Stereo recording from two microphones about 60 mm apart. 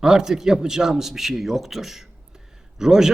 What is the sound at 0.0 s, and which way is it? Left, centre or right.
A man's voice, centre.